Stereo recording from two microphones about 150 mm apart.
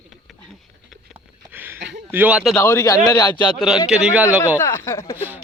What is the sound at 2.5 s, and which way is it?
Speech, 15° left (ahead or behind).